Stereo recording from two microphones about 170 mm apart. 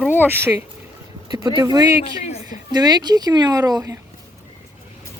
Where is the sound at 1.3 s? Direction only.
25° right (ahead or behind).